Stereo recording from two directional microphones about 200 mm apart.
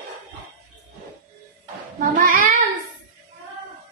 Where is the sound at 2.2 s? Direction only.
40° right (ahead or behind).